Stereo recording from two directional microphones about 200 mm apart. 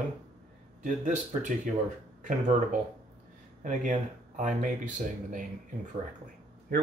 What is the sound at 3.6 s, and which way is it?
Speech, 40° right (ahead or behind).